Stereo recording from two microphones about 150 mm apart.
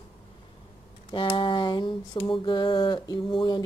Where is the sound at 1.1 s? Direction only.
30° left (ahead or behind).